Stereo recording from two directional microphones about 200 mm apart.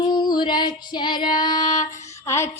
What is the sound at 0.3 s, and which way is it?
Female singing, 20° left (ahead or behind).